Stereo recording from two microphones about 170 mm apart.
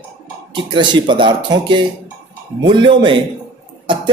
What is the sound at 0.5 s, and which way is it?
A man's voice, 25° right (ahead or behind).